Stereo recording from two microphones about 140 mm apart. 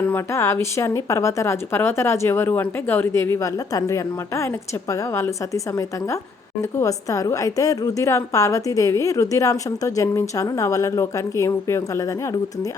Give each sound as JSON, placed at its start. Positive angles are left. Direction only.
{"t": 0.0, "sound": "a woman's voice", "side_deg": 15}
{"t": 6.6, "sound": "a woman's voice", "side_deg": 20}